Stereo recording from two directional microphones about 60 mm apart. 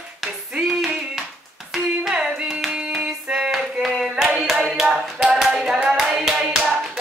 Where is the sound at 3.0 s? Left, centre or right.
Centre.